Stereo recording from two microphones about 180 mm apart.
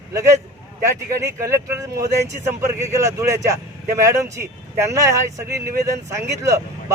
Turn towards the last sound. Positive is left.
turn(degrees=-15)  # may be behind; listen again after turning